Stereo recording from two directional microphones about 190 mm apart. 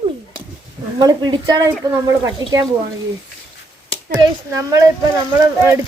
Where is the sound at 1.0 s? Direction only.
20° right (ahead or behind).